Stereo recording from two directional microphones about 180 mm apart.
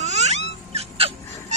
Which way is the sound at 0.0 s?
40° right (ahead or behind).